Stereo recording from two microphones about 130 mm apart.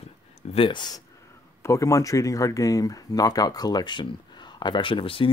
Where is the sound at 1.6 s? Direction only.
25° left (ahead or behind).